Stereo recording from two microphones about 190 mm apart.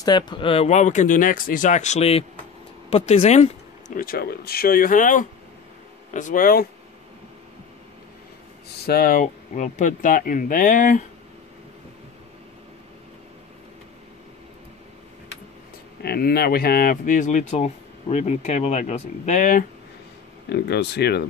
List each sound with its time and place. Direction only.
0.0 s speech: 25° left (ahead or behind)
4.0 s speech: 50° left (ahead or behind)
8.8 s speech: 50° left (ahead or behind)
16.0 s speech: 55° left (ahead or behind)
20.4 s speech: 60° left (ahead or behind)